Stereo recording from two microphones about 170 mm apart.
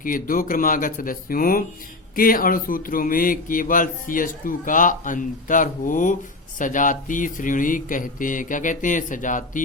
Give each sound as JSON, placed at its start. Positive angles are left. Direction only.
{"t": 0.0, "sound": "speech", "side_deg": 55}